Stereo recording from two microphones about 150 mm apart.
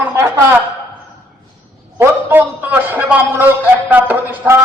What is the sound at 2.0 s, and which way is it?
A man's voice, 10° right (ahead or behind).